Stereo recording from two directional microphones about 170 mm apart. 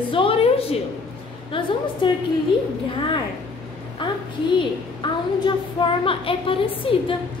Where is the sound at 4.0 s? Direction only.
25° left (ahead or behind).